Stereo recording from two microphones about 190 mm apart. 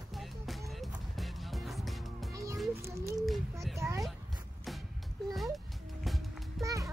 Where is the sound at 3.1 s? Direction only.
Centre (ahead or behind).